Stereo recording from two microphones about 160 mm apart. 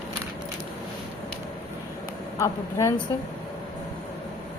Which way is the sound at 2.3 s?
20° left (ahead or behind).